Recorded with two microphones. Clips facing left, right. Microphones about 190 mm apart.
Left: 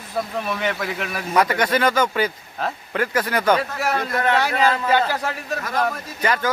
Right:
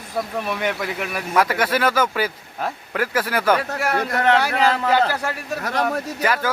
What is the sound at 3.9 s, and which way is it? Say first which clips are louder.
Speech: right 3 dB; 70° right (ahead or behind).